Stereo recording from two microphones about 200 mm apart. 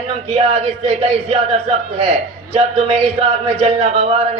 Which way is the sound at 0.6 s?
30° right (ahead or behind).